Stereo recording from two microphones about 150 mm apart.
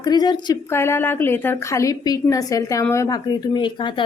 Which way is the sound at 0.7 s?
15° left (ahead or behind).